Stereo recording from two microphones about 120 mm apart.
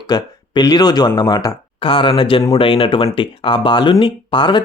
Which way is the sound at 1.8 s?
45° left (ahead or behind).